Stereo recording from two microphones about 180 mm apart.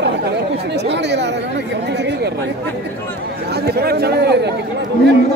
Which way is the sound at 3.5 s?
60° right (ahead or behind).